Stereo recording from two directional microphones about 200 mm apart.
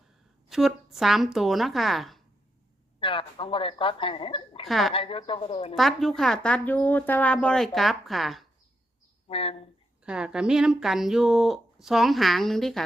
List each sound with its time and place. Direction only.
0.4 s speech: centre (ahead or behind)
3.0 s a woman's voice: 25° left (ahead or behind)
4.6 s speech: centre (ahead or behind)
4.9 s a woman's voice: 25° left (ahead or behind)
5.7 s speech: centre (ahead or behind)
9.3 s a woman's voice: 30° left (ahead or behind)
10.0 s speech: 5° right (ahead or behind)